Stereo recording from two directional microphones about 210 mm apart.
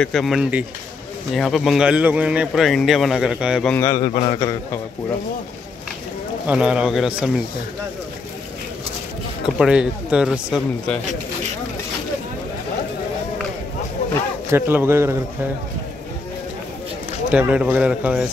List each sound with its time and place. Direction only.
0.0 s speech: centre (ahead or behind)
3.7 s a man's voice: 15° left (ahead or behind)
6.4 s speech: 5° right (ahead or behind)
9.6 s speech: 5° right (ahead or behind)
14.5 s speech: 10° right (ahead or behind)
17.3 s speech: 5° right (ahead or behind)